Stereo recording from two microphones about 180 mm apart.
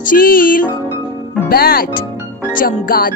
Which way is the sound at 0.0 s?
50° left (ahead or behind).